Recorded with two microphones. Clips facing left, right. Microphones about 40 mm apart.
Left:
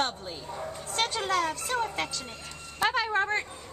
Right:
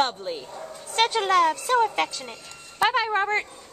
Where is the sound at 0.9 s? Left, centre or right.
Right.